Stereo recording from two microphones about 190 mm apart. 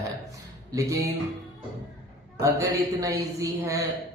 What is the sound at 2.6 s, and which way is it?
Speech, 15° right (ahead or behind).